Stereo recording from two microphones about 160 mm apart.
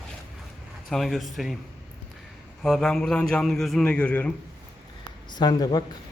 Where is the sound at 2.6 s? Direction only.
Centre (ahead or behind).